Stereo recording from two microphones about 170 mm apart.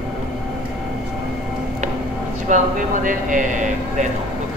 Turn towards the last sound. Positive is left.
turn(degrees=-50)  # may be behind; listen again after turning